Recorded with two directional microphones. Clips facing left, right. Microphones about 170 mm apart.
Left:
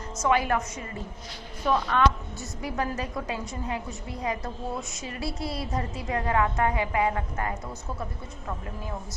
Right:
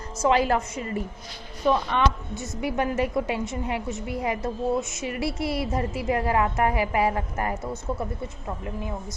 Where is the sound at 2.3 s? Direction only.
20° right (ahead or behind).